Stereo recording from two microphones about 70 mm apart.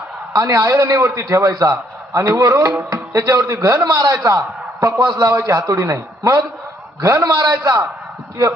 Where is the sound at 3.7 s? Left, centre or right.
Right.